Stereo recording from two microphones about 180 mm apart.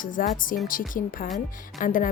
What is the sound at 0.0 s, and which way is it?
Music, 50° left (ahead or behind).